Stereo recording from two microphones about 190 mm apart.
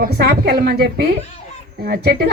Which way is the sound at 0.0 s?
55° right (ahead or behind).